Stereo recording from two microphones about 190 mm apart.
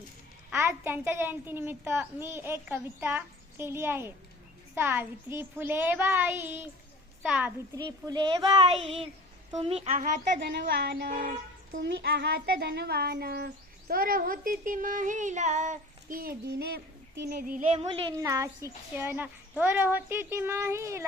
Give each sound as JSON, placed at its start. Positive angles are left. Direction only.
{"t": 0.5, "sound": "a child's voice", "side_deg": -15}
{"t": 7.8, "sound": "speech", "side_deg": -20}
{"t": 10.4, "sound": "speech", "side_deg": -60}
{"t": 17.7, "sound": "speech", "side_deg": -25}
{"t": 18.3, "sound": "a child's voice", "side_deg": -15}